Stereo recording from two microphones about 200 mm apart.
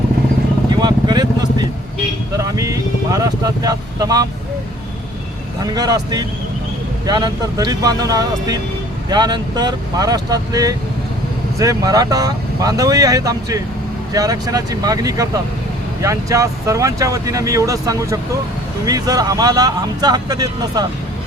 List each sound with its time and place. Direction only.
0.7 s vehicle: 20° right (ahead or behind)
5.6 s speech: 20° right (ahead or behind)